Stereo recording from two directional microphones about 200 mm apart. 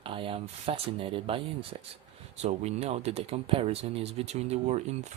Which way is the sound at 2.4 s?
35° right (ahead or behind).